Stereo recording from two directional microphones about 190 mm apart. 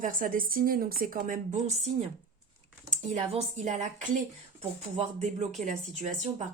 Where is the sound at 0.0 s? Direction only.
45° right (ahead or behind).